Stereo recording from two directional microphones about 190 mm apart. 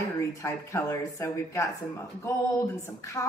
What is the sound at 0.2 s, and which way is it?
Speech, 15° left (ahead or behind).